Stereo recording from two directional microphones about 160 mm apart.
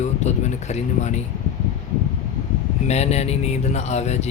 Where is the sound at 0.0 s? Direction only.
45° left (ahead or behind).